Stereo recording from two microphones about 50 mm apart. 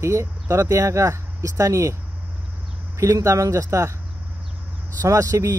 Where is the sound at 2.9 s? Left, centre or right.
Right.